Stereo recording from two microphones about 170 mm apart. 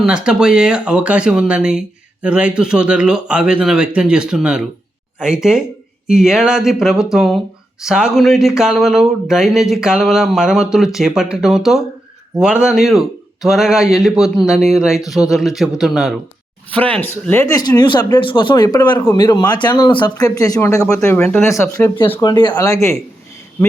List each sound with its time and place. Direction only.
0.0 s speech: 5° right (ahead or behind)
17.5 s speech: 25° left (ahead or behind)